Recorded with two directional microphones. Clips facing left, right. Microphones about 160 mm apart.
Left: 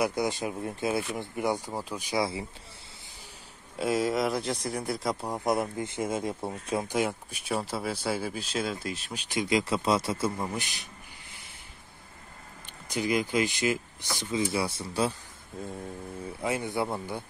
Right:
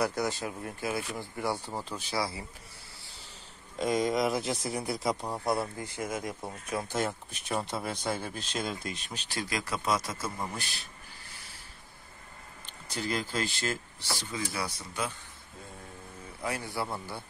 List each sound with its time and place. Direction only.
0.0 s speech: 15° left (ahead or behind)
3.7 s speech: 5° left (ahead or behind)
5.2 s speech: 15° left (ahead or behind)
6.9 s speech: 10° left (ahead or behind); by 10.4 s 25° left (ahead or behind)
12.9 s speech: 15° left (ahead or behind); by 15.1 s 30° left (ahead or behind)
16.3 s speech: 20° left (ahead or behind)